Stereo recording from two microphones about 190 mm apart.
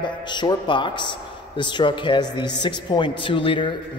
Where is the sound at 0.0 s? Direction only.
25° left (ahead or behind).